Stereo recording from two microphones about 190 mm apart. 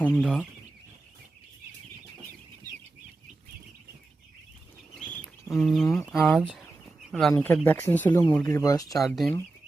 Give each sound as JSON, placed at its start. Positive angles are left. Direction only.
{"t": 0.0, "sound": "speech", "side_deg": 0}
{"t": 4.9, "sound": "chicken", "side_deg": 5}
{"t": 6.1, "sound": "speech", "side_deg": 0}
{"t": 9.0, "sound": "speech", "side_deg": 0}